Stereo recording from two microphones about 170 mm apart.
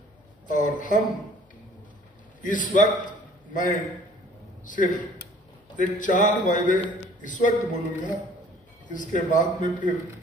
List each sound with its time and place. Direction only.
0.5 s a man's voice: 50° left (ahead or behind)
2.4 s a man's voice: 50° left (ahead or behind)